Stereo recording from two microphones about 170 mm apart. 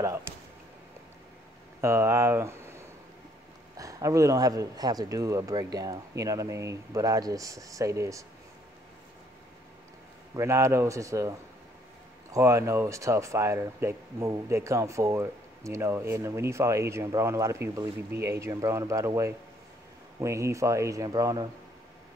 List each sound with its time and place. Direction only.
1.8 s speech: 15° right (ahead or behind)
10.3 s speech: 15° right (ahead or behind)